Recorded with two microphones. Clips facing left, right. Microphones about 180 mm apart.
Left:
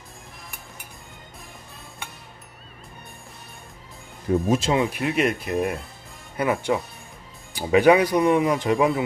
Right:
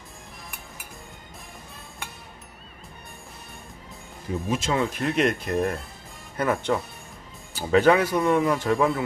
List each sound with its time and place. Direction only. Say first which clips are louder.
4.5 s speech: left 2 dB; 30° left (ahead or behind)
4.7 s speech: left 2 dB; 10° left (ahead or behind)